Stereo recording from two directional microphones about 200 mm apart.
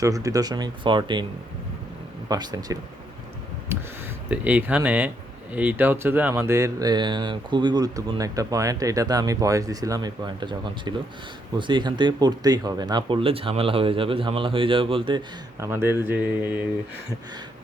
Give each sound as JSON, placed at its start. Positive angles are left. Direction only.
{"t": 0.0, "sound": "speech", "side_deg": -15}
{"t": 2.3, "sound": "speech", "side_deg": -20}
{"t": 15.6, "sound": "speech", "side_deg": -10}